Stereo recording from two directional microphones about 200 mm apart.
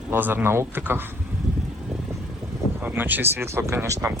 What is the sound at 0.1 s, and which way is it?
A man's voice, 10° right (ahead or behind).